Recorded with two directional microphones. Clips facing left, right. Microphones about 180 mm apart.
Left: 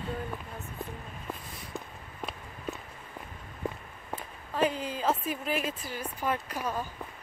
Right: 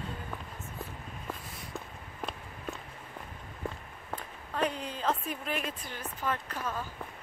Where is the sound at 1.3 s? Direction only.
Centre (ahead or behind).